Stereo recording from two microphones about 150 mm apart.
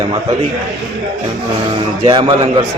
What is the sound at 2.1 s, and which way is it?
Speech, 35° right (ahead or behind).